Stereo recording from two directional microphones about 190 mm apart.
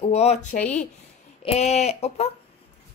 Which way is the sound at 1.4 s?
35° left (ahead or behind).